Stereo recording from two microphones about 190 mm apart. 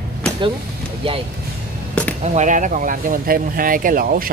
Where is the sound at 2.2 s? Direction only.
40° right (ahead or behind).